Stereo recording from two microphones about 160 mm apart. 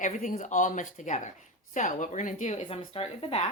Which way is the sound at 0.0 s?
55° left (ahead or behind).